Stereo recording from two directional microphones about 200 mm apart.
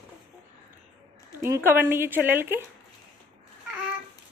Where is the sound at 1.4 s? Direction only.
10° right (ahead or behind).